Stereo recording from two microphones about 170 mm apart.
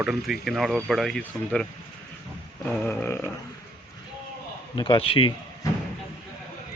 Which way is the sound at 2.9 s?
15° left (ahead or behind).